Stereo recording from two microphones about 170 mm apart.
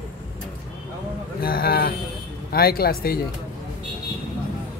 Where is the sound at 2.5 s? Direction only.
65° left (ahead or behind).